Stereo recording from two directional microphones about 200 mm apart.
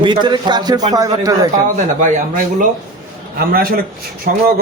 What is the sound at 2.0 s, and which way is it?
Speech, 40° right (ahead or behind).